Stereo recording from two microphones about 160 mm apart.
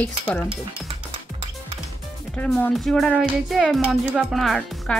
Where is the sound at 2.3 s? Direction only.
5° left (ahead or behind).